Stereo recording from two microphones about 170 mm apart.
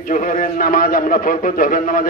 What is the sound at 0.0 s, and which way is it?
A man's voice, 50° left (ahead or behind).